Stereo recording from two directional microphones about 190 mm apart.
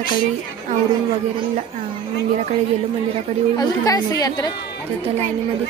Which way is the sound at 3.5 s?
20° left (ahead or behind).